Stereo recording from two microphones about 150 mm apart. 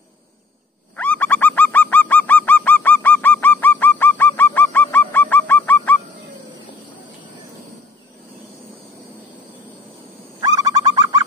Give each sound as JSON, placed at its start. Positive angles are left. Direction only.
{"t": 0.9, "sound": "bird", "side_deg": 10}
{"t": 10.4, "sound": "bird", "side_deg": -25}